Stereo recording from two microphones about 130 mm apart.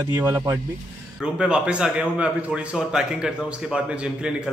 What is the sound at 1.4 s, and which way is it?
A man's voice, 5° right (ahead or behind).